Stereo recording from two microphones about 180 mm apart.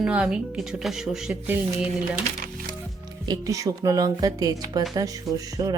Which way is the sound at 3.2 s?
20° right (ahead or behind).